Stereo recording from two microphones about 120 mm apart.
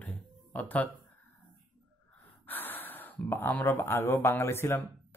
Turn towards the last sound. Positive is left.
turn(degrees=20)  # may be behind; listen again after turning